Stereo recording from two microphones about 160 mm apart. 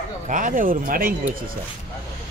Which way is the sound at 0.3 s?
55° right (ahead or behind).